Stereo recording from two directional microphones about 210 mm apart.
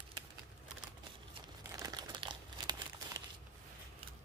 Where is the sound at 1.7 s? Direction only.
15° right (ahead or behind).